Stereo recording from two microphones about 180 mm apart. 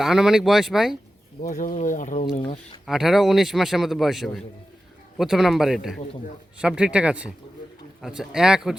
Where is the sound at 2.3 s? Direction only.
35° left (ahead or behind).